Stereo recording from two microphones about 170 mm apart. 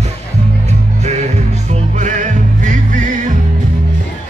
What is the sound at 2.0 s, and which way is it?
Music, 45° right (ahead or behind).